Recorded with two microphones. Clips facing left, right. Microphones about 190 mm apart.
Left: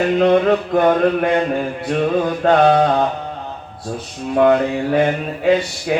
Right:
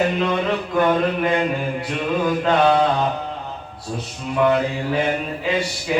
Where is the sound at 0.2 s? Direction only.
50° left (ahead or behind).